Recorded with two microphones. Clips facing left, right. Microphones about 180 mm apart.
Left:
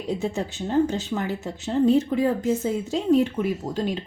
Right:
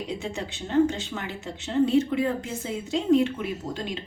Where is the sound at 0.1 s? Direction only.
40° left (ahead or behind).